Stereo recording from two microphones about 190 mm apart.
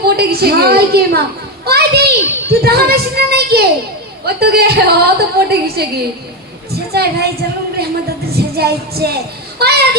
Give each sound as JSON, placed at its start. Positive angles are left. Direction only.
{"t": 0.0, "sound": "a woman's voice", "side_deg": -55}